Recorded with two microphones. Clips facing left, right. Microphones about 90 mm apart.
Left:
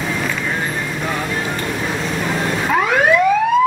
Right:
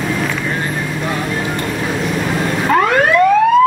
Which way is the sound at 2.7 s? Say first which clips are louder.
Right 2 dB; centre (ahead or behind).